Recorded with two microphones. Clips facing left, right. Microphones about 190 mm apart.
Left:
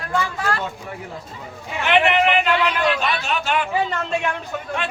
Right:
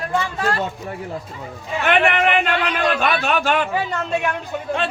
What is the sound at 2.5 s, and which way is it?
A man's voice, 55° right (ahead or behind).